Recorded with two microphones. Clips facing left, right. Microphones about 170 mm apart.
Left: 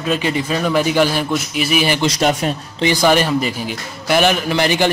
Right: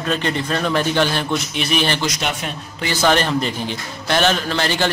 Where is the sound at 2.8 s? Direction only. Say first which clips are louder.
Left 3 dB; 15° left (ahead or behind).